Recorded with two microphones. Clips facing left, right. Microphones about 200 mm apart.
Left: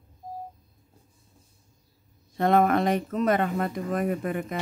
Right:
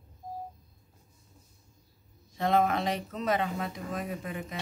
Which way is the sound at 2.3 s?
55° left (ahead or behind).